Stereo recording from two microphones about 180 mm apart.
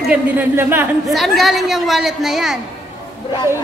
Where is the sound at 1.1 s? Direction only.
Centre (ahead or behind).